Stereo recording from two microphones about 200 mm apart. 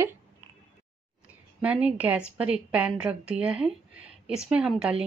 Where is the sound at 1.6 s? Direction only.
5° right (ahead or behind).